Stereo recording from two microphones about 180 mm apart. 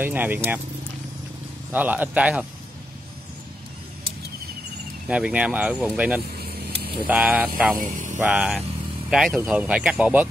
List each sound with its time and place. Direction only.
0.0 s speech: 10° right (ahead or behind)
1.7 s speech: 10° right (ahead or behind)
5.0 s speech: 5° right (ahead or behind)
7.8 s a sound: 45° right (ahead or behind)
8.2 s speech: 5° right (ahead or behind)